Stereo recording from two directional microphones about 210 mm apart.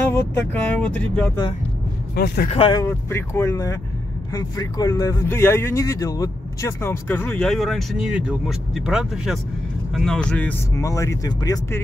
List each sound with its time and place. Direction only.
0.1 s speech: 10° left (ahead or behind)
2.1 s speech: 50° left (ahead or behind)
2.5 s speech: 25° left (ahead or behind)
2.8 s speech: 10° left (ahead or behind)